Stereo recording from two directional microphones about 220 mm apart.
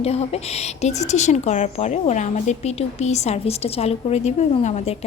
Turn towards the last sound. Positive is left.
turn(degrees=30)  # may be behind; listen again after turning